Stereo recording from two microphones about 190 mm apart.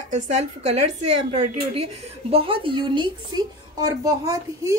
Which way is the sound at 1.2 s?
35° right (ahead or behind).